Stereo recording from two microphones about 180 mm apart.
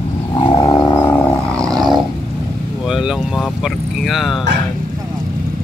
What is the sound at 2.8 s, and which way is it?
Vehicle, 5° right (ahead or behind).